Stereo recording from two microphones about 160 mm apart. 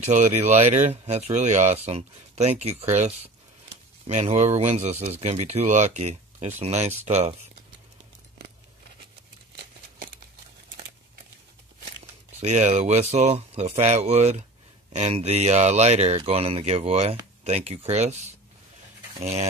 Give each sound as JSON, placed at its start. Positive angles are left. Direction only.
{"t": 0.0, "sound": "speech", "side_deg": -45}
{"t": 12.4, "sound": "speech", "side_deg": -50}